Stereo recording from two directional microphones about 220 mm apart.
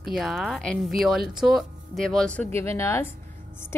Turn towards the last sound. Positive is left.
turn(degrees=10)  # may be behind; listen again after turning